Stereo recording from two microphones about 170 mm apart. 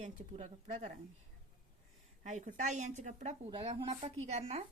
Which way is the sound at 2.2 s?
45° right (ahead or behind).